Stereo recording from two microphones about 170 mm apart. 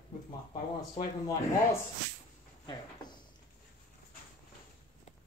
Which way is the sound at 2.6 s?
25° left (ahead or behind).